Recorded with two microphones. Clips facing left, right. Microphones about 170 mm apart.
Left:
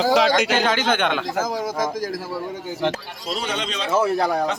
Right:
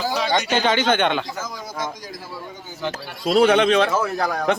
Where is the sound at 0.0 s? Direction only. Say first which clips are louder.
Left 5 dB; 90° left.